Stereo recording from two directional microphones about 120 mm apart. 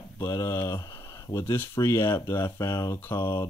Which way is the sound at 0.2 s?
35° left (ahead or behind).